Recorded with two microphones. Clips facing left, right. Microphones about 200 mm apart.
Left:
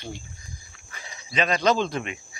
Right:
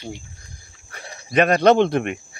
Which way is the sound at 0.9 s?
60° right (ahead or behind).